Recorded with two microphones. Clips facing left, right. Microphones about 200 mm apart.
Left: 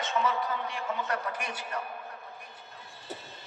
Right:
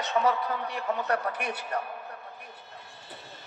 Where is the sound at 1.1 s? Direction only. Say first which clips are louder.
Right 4 dB; 60° right (ahead or behind).